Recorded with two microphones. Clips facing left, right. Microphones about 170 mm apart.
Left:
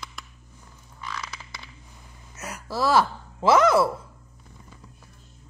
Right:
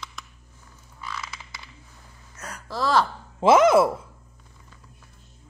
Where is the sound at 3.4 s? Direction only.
20° right (ahead or behind).